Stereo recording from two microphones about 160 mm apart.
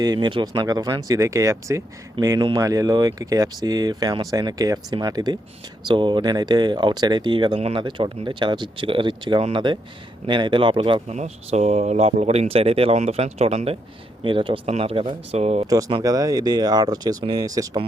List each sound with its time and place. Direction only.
0.0 s speech: 25° right (ahead or behind)
11.1 s speech: 45° right (ahead or behind)
15.6 s speech: 20° right (ahead or behind)